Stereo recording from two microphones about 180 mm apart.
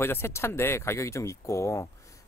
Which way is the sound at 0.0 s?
15° left (ahead or behind).